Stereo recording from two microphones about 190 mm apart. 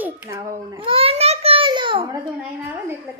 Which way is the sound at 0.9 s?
30° right (ahead or behind).